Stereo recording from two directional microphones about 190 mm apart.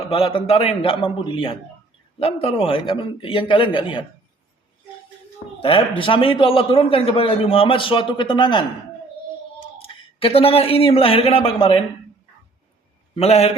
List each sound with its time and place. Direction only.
0.1 s a man's voice: 30° left (ahead or behind)
6.0 s a man's voice: 25° left (ahead or behind)
9.8 s speech: 30° left (ahead or behind)
13.1 s a man's voice: 35° left (ahead or behind)